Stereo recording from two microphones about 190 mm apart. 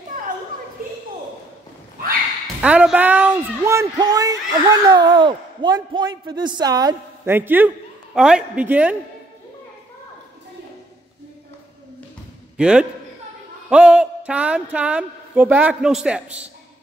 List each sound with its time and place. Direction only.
2.4 s a man's voice: 5° right (ahead or behind)
12.5 s a man's voice: 5° right (ahead or behind)